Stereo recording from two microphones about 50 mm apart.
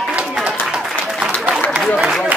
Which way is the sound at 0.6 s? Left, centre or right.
Centre.